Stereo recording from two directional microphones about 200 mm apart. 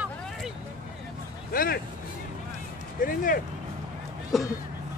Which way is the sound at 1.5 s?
45° left (ahead or behind).